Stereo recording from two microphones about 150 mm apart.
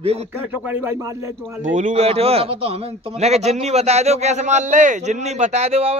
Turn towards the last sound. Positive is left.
turn(degrees=-40)  # may be behind; listen again after turning